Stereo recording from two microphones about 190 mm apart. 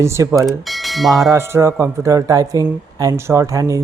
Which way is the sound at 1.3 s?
15° right (ahead or behind).